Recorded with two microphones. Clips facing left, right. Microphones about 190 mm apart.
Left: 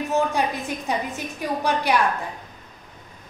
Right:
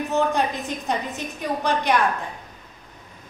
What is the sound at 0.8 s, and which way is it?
A woman's voice, 10° left (ahead or behind).